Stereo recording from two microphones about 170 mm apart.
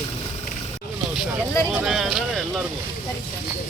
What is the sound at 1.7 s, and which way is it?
Speech, centre (ahead or behind).